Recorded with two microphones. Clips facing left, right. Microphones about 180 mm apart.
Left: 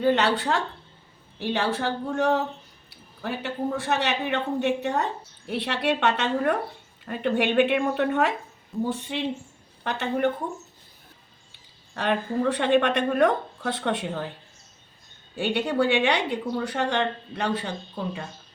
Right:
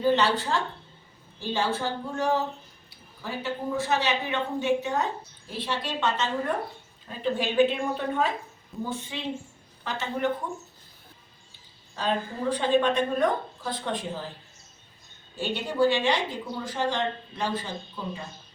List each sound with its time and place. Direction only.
0.0 s a woman's voice: 65° left (ahead or behind)
11.9 s a woman's voice: 65° left (ahead or behind)
15.4 s a woman's voice: 65° left (ahead or behind)